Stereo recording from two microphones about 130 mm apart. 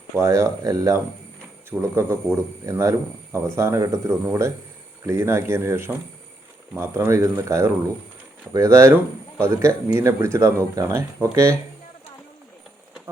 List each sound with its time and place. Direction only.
0.2 s speech: 25° right (ahead or behind)